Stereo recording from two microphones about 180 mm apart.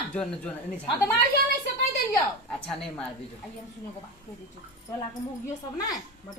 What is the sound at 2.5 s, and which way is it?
Speech, 5° left (ahead or behind).